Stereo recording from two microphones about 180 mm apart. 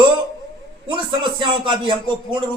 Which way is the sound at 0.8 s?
25° right (ahead or behind).